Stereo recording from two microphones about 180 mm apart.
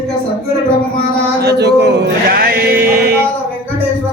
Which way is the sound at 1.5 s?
70° right (ahead or behind).